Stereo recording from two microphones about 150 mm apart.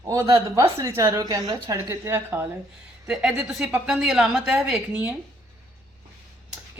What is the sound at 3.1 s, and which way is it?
A woman's voice, 5° right (ahead or behind).